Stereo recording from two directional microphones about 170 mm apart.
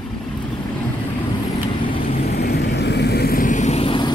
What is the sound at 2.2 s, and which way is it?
Vehicle, 70° left (ahead or behind).